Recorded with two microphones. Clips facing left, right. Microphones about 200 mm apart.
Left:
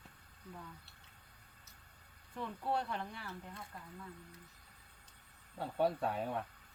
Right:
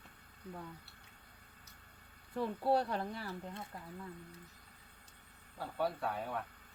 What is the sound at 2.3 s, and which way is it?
Speech, 35° right (ahead or behind).